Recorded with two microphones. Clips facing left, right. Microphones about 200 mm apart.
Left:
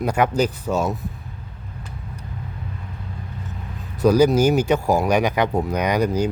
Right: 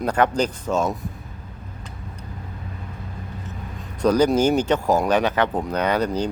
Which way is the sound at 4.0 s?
10° left (ahead or behind).